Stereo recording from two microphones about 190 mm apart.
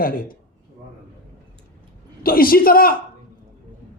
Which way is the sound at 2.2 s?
50° left (ahead or behind).